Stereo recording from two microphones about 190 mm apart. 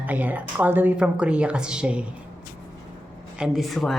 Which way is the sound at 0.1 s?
10° right (ahead or behind).